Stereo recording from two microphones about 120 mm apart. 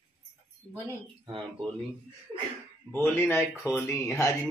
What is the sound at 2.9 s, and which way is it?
A man's voice, 15° left (ahead or behind).